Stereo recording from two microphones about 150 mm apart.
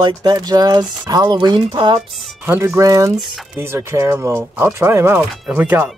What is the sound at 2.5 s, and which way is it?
Speech, 15° right (ahead or behind).